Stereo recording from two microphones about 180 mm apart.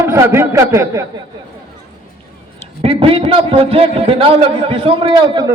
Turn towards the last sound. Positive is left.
turn(degrees=-25)  # may be behind; listen again after turning